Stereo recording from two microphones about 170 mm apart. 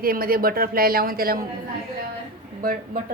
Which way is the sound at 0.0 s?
60° right (ahead or behind).